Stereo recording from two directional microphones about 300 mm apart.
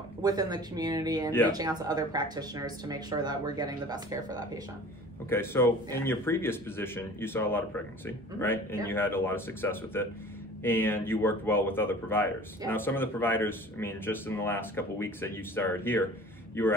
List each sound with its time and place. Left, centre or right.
0.2 s speech: centre
5.3 s a man's voice: centre
8.8 s a man's voice: centre